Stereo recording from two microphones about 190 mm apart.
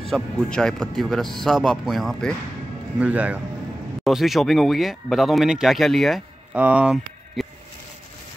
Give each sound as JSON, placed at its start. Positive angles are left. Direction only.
{"t": 0.1, "sound": "a man's voice", "side_deg": 5}